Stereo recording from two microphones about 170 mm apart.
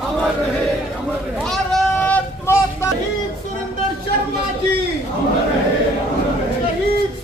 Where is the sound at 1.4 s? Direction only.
5° left (ahead or behind).